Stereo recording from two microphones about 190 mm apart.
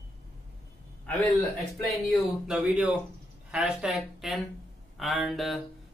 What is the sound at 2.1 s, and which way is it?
Speech, 5° right (ahead or behind).